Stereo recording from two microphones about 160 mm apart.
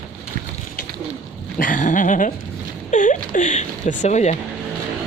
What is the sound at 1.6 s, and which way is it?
Speech, 55° left (ahead or behind).